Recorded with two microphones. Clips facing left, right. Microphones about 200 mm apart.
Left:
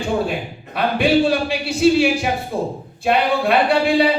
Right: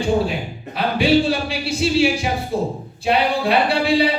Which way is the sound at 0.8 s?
50° left (ahead or behind).